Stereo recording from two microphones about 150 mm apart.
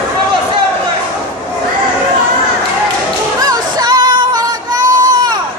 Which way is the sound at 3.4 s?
25° right (ahead or behind).